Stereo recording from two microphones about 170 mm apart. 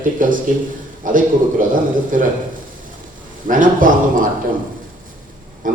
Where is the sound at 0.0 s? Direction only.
50° right (ahead or behind).